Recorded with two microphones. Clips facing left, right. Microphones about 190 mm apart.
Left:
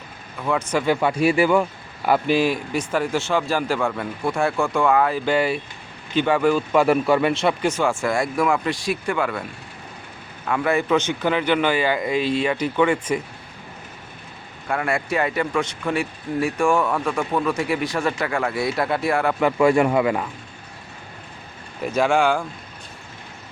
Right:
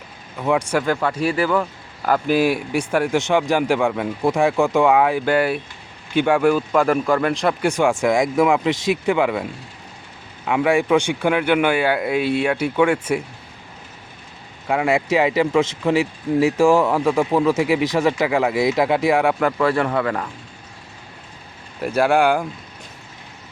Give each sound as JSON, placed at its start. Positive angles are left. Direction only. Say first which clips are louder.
{"t": 0.4, "sound": "speech", "louder": "right 3 dB", "side_deg": -10}
{"t": 0.8, "sound": "speech", "louder": "left 1 dB", "side_deg": 10}
{"t": 2.3, "sound": "speech", "louder": "right 2 dB", "side_deg": -10}
{"t": 6.7, "sound": "a man's voice", "louder": "even", "side_deg": 5}
{"t": 7.6, "sound": "speech", "louder": "right 3 dB", "side_deg": -15}
{"t": 14.7, "sound": "speech", "louder": "right 5 dB", "side_deg": -15}
{"t": 17.7, "sound": "speech", "louder": "right 5 dB", "side_deg": -90}
{"t": 17.9, "sound": "speech", "louder": "right 5 dB", "side_deg": -20}
{"t": 19.4, "sound": "speech", "louder": "left 2 dB", "side_deg": 10}
{"t": 21.8, "sound": "speech", "louder": "right 2 dB", "side_deg": -5}